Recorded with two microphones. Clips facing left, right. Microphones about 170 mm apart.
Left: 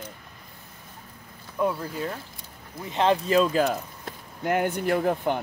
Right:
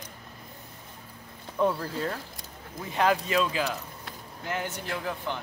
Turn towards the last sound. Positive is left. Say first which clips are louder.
# left 9 dB
turn(degrees=50)  # may be behind; listen again after turning